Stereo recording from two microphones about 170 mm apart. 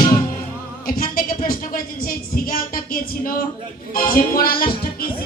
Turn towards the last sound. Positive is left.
turn(degrees=60)  # may be behind; listen again after turning